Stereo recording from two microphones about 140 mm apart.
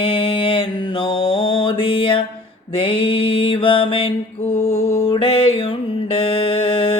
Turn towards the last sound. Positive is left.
turn(degrees=40)  # may be behind; listen again after turning